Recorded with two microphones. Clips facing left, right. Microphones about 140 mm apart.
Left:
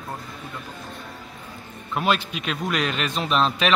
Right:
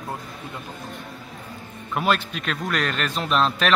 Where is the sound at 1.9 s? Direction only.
Centre (ahead or behind).